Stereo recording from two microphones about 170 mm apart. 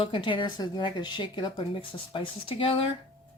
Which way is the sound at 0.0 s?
30° left (ahead or behind).